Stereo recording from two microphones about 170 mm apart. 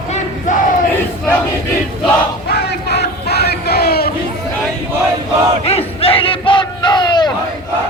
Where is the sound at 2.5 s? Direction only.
75° left (ahead or behind).